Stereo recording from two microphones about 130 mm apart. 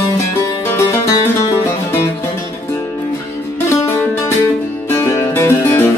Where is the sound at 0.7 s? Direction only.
25° left (ahead or behind).